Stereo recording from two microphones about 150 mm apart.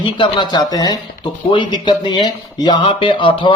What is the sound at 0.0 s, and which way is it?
Speech, 30° left (ahead or behind).